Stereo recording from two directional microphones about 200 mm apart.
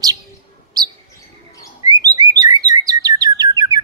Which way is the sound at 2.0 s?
20° right (ahead or behind).